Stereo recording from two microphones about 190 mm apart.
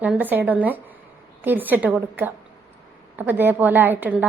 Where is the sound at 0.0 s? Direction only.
10° right (ahead or behind).